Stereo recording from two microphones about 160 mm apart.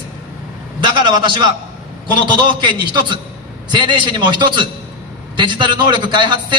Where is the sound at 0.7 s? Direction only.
30° right (ahead or behind).